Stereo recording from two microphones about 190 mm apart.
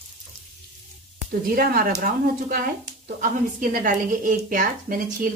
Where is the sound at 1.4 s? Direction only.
50° right (ahead or behind).